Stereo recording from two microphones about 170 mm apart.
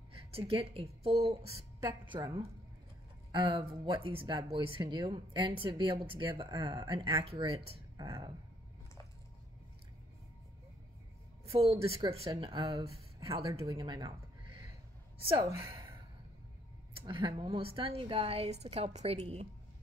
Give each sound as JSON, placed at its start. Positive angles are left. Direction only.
{"t": 0.5, "sound": "a woman's voice", "side_deg": -35}
{"t": 11.4, "sound": "a woman's voice", "side_deg": -35}
{"t": 15.5, "sound": "a sound", "side_deg": -15}
{"t": 16.9, "sound": "a woman's voice", "side_deg": -30}